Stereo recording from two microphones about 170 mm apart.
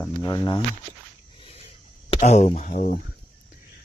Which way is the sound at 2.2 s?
45° left (ahead or behind).